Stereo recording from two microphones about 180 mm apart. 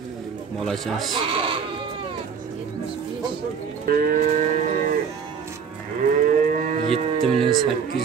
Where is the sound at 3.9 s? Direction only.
55° right (ahead or behind).